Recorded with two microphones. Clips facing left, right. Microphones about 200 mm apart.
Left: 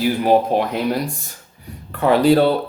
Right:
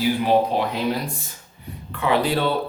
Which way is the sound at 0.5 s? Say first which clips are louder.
Left 4 dB; 50° left (ahead or behind).